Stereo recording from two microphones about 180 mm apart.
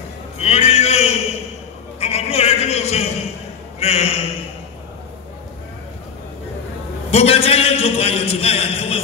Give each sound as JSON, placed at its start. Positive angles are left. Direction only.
{"t": 0.4, "sound": "a sound", "side_deg": 35}
{"t": 3.8, "sound": "a man's voice", "side_deg": 35}
{"t": 7.1, "sound": "a man's voice", "side_deg": 35}